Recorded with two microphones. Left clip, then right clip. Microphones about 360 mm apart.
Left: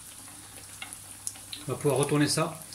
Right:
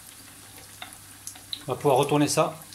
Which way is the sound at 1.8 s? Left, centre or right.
Centre.